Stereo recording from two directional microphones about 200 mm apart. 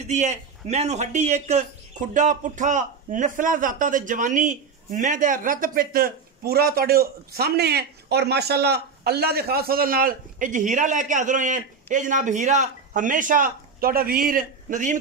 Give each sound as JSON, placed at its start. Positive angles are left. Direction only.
{"t": 0.0, "sound": "a man's voice", "side_deg": -35}